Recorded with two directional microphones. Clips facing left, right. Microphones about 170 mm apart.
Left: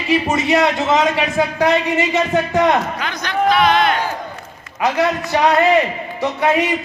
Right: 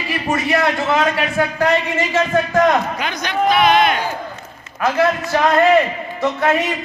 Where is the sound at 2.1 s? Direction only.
15° left (ahead or behind).